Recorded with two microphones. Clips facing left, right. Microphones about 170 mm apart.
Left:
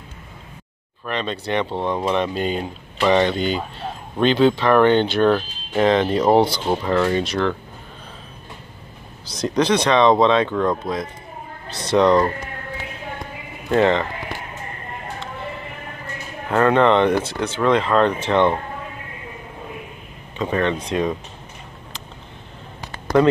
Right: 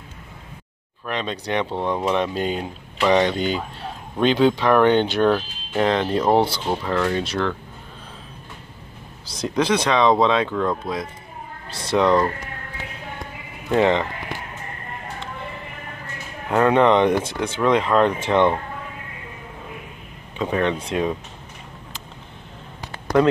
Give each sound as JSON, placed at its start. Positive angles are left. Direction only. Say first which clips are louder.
{"t": 1.0, "sound": "speech", "louder": "left 1 dB", "side_deg": -10}
{"t": 5.7, "sound": "speech", "louder": "left 3 dB", "side_deg": 0}
{"t": 9.3, "sound": "speech", "louder": "left 2 dB", "side_deg": -5}
{"t": 13.7, "sound": "speech", "louder": "left 1 dB", "side_deg": -10}
{"t": 16.4, "sound": "speech", "louder": "even", "side_deg": -10}
{"t": 20.3, "sound": "speech", "louder": "left 1 dB", "side_deg": -5}
{"t": 23.1, "sound": "speech", "louder": "left 2 dB", "side_deg": -5}